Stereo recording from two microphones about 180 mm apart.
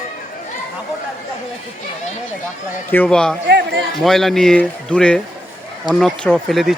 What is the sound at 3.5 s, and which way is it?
Chatter, 70° right (ahead or behind).